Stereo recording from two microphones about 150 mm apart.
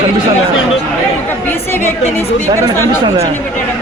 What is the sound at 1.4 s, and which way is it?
Speech, 15° left (ahead or behind).